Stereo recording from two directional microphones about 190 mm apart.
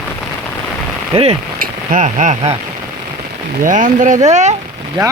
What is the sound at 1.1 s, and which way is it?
Speech, 30° right (ahead or behind).